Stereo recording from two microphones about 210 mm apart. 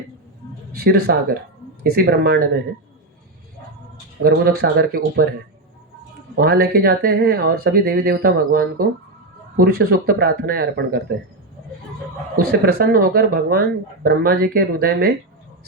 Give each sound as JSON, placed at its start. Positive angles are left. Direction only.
{"t": 0.7, "sound": "speech", "side_deg": -45}
{"t": 4.2, "sound": "speech", "side_deg": -45}
{"t": 6.3, "sound": "speech", "side_deg": -45}
{"t": 12.4, "sound": "speech", "side_deg": -50}